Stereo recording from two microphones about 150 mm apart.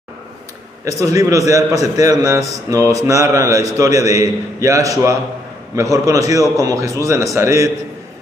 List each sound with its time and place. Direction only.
0.8 s a man's voice: 20° right (ahead or behind)